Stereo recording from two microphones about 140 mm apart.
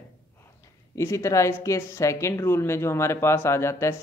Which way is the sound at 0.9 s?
20° left (ahead or behind).